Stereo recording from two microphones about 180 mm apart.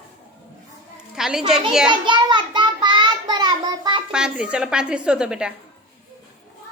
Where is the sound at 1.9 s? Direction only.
25° right (ahead or behind).